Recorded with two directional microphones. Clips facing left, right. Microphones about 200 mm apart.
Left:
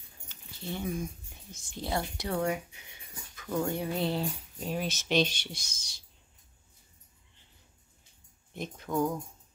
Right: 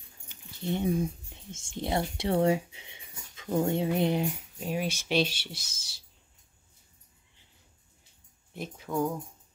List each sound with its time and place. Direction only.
0.3 s dog: 20° right (ahead or behind)
0.9 s speech: 30° right (ahead or behind); by 6.0 s 5° right (ahead or behind)
8.5 s speech: 5° right (ahead or behind)